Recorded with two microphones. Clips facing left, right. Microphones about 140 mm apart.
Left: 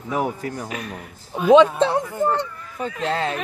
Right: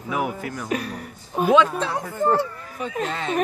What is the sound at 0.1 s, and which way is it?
Speech, 35° left (ahead or behind).